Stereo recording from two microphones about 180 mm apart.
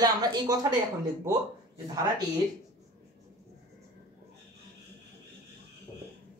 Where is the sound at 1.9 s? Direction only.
20° right (ahead or behind).